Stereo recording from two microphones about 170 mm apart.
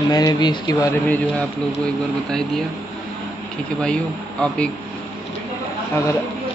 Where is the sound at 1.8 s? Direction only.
5° left (ahead or behind).